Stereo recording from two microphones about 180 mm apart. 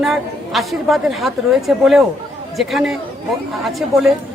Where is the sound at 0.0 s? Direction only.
Centre (ahead or behind).